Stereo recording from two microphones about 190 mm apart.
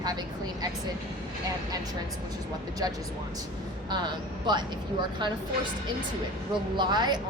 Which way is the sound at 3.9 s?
25° right (ahead or behind).